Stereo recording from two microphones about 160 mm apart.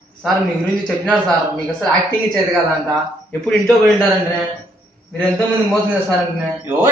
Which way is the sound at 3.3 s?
5° left (ahead or behind).